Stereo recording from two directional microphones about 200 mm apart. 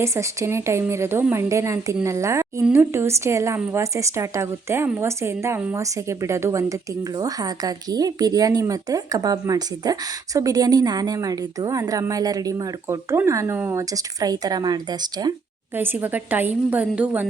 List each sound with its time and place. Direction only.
0.0 s a woman's voice: 15° right (ahead or behind)
15.7 s a woman's voice: 10° right (ahead or behind)